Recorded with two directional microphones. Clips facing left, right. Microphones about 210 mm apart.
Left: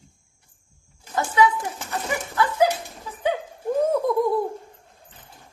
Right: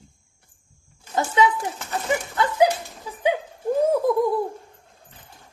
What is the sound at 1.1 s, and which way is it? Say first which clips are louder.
A man's voice: even; 20° right (ahead or behind).